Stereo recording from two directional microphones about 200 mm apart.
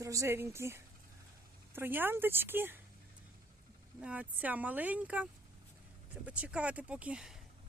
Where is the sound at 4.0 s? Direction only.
5° right (ahead or behind).